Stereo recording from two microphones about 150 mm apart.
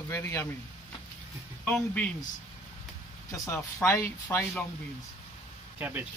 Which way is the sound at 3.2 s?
20° left (ahead or behind).